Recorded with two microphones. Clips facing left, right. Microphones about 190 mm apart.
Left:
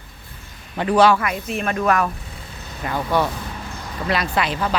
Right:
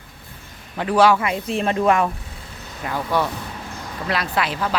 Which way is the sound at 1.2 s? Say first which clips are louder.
Right 2 dB; 30° right (ahead or behind).